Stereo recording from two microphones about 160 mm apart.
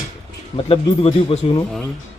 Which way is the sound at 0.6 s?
35° left (ahead or behind).